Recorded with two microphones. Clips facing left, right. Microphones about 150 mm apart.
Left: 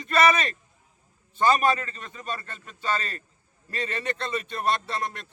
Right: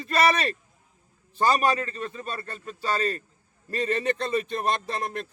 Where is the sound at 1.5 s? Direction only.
35° right (ahead or behind).